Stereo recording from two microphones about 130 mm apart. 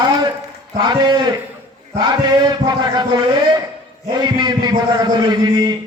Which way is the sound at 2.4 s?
35° right (ahead or behind).